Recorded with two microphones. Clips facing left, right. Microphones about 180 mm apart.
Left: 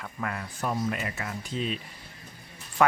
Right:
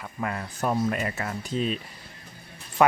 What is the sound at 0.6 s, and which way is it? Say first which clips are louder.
Speech: right 4 dB; 45° right (ahead or behind).